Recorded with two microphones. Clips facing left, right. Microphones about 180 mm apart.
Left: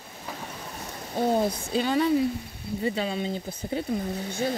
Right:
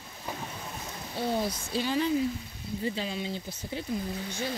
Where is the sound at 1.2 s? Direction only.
50° left (ahead or behind).